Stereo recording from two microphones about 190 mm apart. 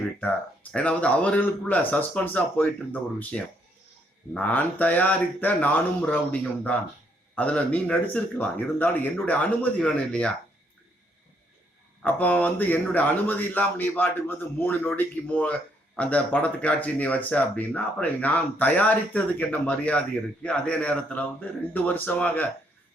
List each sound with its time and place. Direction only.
0.2 s speech: 5° left (ahead or behind)
12.0 s speech: 5° left (ahead or behind)